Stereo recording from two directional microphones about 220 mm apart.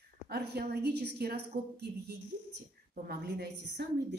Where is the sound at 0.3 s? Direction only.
45° right (ahead or behind).